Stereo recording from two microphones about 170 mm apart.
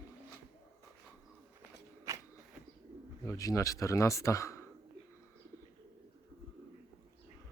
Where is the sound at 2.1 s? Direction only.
20° right (ahead or behind).